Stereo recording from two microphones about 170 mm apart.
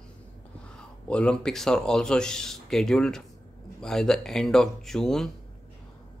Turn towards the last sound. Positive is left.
turn(degrees=0)  # may be behind; listen again after turning